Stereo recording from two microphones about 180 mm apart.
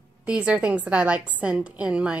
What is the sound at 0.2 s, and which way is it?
A woman's voice, 5° right (ahead or behind).